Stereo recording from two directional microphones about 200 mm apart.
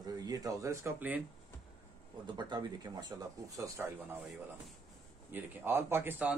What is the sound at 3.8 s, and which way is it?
Speech, 10° right (ahead or behind).